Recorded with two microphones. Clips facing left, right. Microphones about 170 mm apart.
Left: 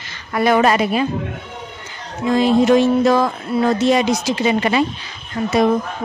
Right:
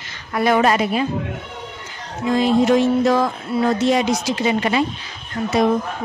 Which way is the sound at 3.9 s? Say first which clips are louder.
Left 2 dB; 85° left.